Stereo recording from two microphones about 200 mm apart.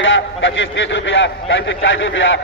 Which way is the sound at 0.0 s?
70° left (ahead or behind).